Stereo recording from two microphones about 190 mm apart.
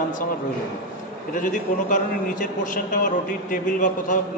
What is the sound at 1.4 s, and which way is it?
A man's voice, 45° left (ahead or behind).